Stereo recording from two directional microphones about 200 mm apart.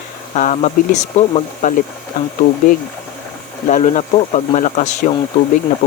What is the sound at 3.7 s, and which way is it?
Speech, 40° left (ahead or behind).